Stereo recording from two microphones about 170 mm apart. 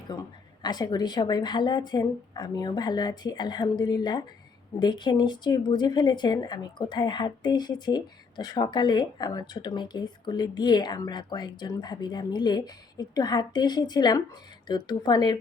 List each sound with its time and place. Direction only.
0.1 s speech: 25° left (ahead or behind)